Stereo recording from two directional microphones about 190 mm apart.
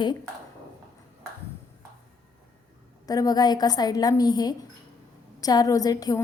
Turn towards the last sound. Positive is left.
turn(degrees=20)  # may be behind; listen again after turning